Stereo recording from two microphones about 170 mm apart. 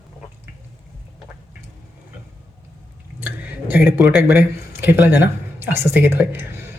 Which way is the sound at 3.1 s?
10° right (ahead or behind).